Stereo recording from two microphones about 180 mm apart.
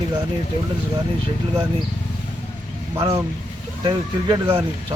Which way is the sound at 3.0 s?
20° right (ahead or behind).